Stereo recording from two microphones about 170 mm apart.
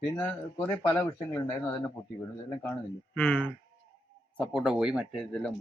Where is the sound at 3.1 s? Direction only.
10° left (ahead or behind).